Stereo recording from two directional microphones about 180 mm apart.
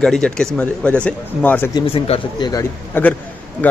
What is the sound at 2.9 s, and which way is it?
Speech, 10° left (ahead or behind).